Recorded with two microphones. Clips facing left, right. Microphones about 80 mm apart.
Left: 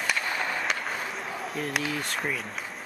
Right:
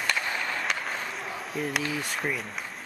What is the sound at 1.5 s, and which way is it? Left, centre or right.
Speech, centre.